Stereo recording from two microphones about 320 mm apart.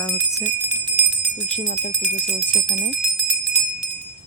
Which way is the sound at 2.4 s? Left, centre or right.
Centre.